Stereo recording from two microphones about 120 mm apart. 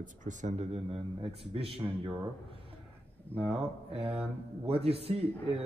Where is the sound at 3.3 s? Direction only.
55° right (ahead or behind).